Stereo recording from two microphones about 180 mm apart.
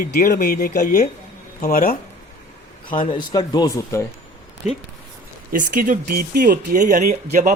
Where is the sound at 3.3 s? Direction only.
20° left (ahead or behind).